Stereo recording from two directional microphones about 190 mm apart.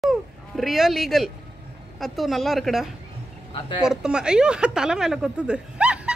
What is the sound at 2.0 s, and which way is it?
Speech, centre (ahead or behind).